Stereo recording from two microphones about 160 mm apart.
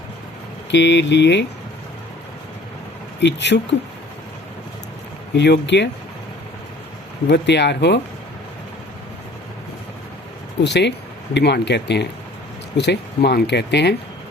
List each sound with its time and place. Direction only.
0.7 s speech: 90° left
3.2 s speech: 90° left
5.3 s speech: 90° left
7.3 s speech: 90° left
10.6 s speech: 90° left